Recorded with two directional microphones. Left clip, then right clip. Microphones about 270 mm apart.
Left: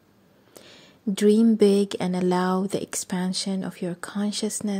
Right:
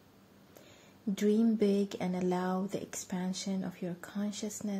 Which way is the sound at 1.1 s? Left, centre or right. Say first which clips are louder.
Left 10 dB; left.